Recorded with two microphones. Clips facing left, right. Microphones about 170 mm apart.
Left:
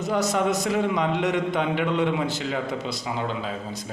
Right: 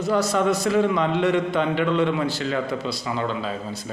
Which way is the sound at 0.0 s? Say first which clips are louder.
Right 2 dB; 20° left (ahead or behind).